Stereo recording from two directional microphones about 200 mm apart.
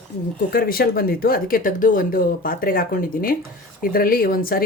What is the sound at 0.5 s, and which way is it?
Speech, 45° left (ahead or behind).